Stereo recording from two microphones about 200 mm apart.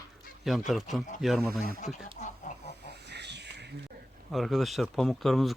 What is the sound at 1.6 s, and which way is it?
Speech, 35° left (ahead or behind).